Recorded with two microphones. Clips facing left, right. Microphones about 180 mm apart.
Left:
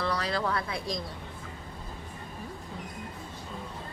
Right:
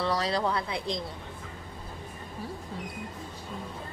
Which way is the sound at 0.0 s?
25° right (ahead or behind).